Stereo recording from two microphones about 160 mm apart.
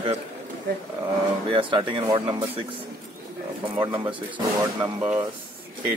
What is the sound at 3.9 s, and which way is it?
Speech, 30° right (ahead or behind).